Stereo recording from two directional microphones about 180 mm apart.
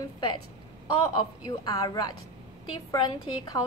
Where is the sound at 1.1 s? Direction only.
20° left (ahead or behind).